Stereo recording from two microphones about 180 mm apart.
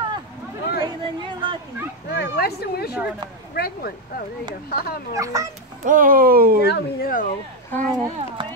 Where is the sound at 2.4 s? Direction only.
60° left (ahead or behind).